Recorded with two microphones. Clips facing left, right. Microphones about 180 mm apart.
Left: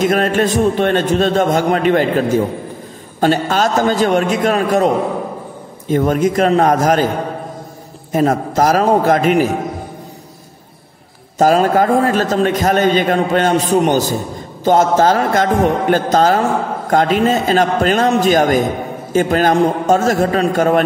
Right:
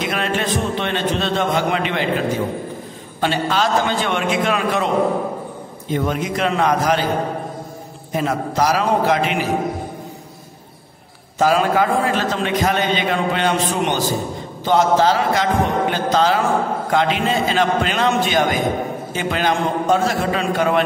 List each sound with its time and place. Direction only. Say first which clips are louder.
0.0 s a man's voice: left 8 dB; 45° left (ahead or behind)
3.2 s a man's voice: left 5 dB; 45° left (ahead or behind)
8.1 s a man's voice: left 6 dB; 45° left (ahead or behind)
11.3 s a man's voice: left 4 dB; 45° left (ahead or behind)